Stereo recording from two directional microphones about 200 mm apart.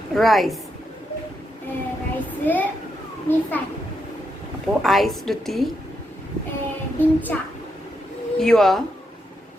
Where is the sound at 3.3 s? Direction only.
10° left (ahead or behind).